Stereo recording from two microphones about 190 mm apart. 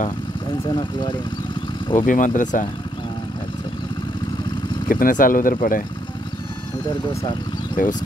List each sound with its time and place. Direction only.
2.0 s speech: 40° left (ahead or behind)
4.8 s speech: 45° left (ahead or behind)
7.8 s speech: 45° left (ahead or behind)